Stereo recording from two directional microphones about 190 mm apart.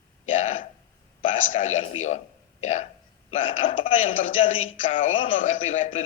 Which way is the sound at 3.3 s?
40° left (ahead or behind).